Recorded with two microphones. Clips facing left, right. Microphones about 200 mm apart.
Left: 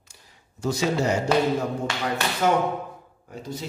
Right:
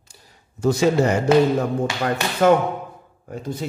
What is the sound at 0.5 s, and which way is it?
Speech, 55° right (ahead or behind).